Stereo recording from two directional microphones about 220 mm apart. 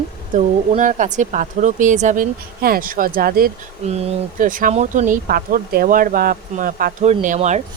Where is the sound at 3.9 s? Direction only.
30° right (ahead or behind).